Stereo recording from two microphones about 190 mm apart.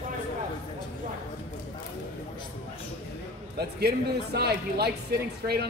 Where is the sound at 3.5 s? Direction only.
60° right (ahead or behind).